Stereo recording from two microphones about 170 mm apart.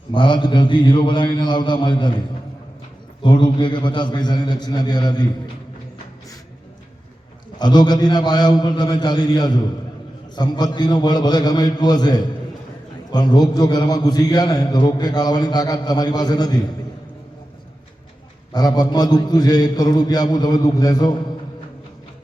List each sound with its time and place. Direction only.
0.1 s a man's voice: 25° left (ahead or behind)
3.2 s a man's voice: 25° left (ahead or behind)
7.6 s a man's voice: 25° left (ahead or behind)
18.5 s a man's voice: 25° left (ahead or behind)